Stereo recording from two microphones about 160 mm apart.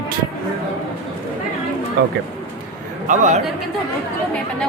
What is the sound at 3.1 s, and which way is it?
Speech, 50° right (ahead or behind).